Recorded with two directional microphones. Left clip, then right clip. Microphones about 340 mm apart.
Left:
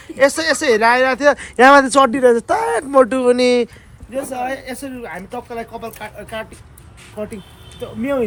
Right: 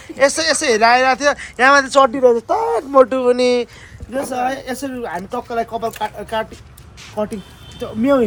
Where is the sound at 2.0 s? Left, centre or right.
Left.